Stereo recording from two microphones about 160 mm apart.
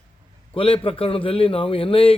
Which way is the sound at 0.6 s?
35° left (ahead or behind).